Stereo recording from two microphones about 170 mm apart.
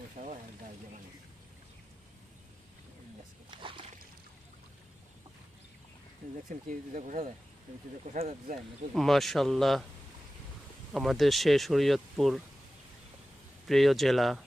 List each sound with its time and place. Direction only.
0.2 s vehicle: 40° right (ahead or behind)
3.5 s a sound: 30° right (ahead or behind)
6.5 s speech: 50° right (ahead or behind)
9.0 s speech: centre (ahead or behind)
10.9 s speech: centre (ahead or behind)
13.7 s speech: centre (ahead or behind)